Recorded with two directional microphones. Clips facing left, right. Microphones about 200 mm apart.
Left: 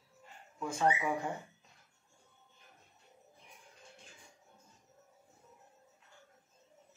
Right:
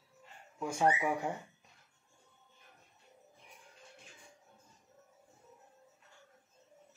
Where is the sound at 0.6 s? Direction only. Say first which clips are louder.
Right 2 dB; 15° right (ahead or behind).